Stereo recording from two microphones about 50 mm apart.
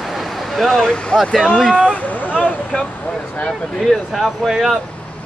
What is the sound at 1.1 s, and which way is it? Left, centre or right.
Speech, centre.